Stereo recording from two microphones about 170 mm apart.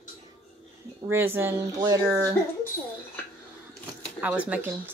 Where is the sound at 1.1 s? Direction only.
15° right (ahead or behind).